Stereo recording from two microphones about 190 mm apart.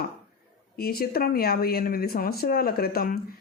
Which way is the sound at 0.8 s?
55° left (ahead or behind).